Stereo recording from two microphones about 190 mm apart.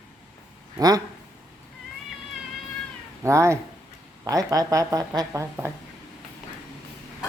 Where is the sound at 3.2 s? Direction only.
15° right (ahead or behind).